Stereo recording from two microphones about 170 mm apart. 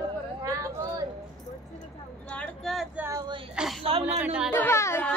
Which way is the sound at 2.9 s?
15° right (ahead or behind).